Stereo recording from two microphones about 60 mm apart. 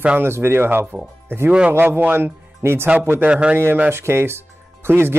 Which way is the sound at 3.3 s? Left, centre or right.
Centre.